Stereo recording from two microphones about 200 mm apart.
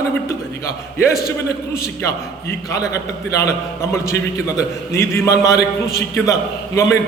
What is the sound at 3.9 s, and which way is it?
A man's voice, 15° left (ahead or behind).